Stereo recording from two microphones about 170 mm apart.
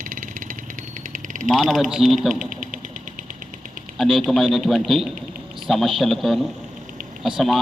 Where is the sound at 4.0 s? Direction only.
Centre (ahead or behind).